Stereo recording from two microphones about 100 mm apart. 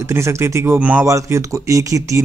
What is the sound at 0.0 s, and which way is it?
Speech, 30° right (ahead or behind).